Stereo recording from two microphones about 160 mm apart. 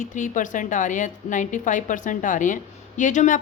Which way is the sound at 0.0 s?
50° left (ahead or behind).